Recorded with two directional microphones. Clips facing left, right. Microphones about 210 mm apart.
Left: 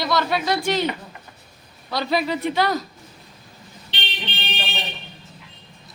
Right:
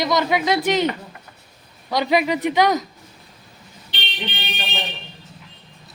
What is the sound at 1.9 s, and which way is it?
Speech, 15° right (ahead or behind).